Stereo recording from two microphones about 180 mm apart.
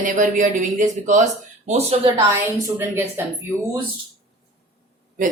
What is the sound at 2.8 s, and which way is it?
Speech, 10° right (ahead or behind).